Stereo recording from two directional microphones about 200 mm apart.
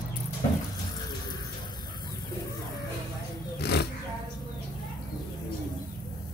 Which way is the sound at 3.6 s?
55° left (ahead or behind).